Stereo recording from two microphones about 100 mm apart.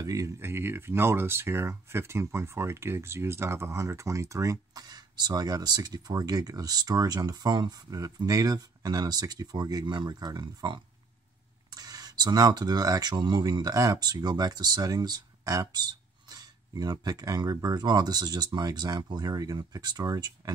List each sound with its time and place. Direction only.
0.0 s speech: 35° right (ahead or behind)
7.9 s speech: 35° right (ahead or behind)